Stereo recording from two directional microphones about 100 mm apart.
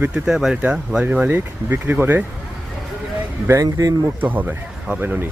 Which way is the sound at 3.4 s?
30° right (ahead or behind).